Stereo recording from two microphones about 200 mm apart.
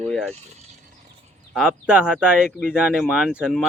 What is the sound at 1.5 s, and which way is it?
Speech, 5° right (ahead or behind).